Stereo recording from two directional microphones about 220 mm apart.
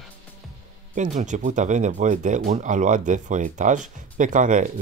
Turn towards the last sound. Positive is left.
turn(degrees=-35)  # may be behind; listen again after turning